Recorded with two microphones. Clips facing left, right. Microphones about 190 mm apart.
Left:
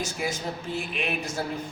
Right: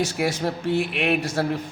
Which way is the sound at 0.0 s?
70° right (ahead or behind).